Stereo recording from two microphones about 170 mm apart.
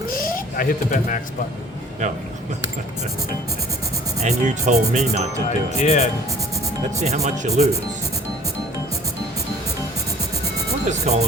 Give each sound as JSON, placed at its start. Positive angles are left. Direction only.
{"t": 0.1, "sound": "a sound", "side_deg": 60}
{"t": 4.2, "sound": "speech", "side_deg": -40}
{"t": 5.5, "sound": "speech", "side_deg": 40}
{"t": 7.0, "sound": "speech", "side_deg": -45}
{"t": 10.8, "sound": "speech", "side_deg": -40}